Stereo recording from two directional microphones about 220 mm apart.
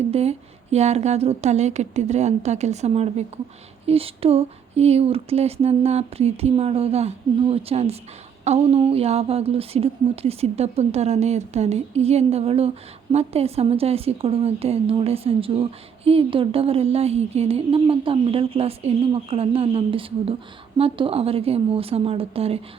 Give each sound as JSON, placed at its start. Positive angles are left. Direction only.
{"t": 0.1, "sound": "a woman's voice", "side_deg": -30}